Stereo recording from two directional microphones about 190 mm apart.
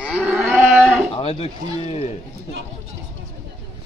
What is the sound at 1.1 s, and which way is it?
Speech, 30° left (ahead or behind).